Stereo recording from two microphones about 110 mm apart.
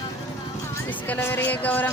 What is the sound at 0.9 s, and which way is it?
Speech, 15° left (ahead or behind).